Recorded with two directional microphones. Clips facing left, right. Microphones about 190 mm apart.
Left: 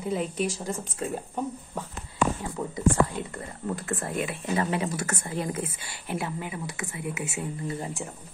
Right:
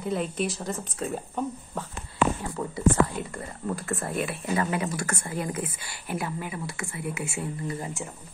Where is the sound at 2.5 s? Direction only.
20° left (ahead or behind).